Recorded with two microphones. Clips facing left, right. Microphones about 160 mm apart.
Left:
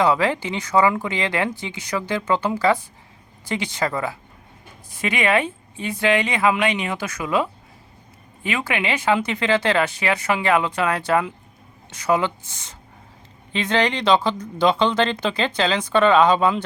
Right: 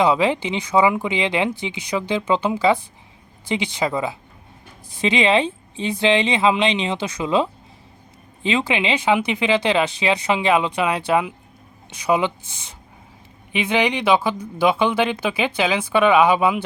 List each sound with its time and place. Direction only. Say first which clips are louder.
0.0 s speech: right 1 dB; 15° right (ahead or behind)